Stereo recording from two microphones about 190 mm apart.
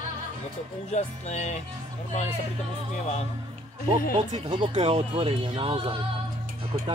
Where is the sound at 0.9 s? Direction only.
40° left (ahead or behind).